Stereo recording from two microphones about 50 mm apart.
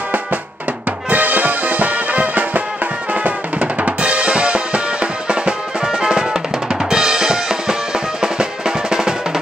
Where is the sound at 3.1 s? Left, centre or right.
Right.